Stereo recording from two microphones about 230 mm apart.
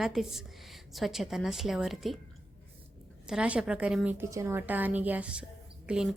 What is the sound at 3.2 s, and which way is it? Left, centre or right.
A woman's voice, centre.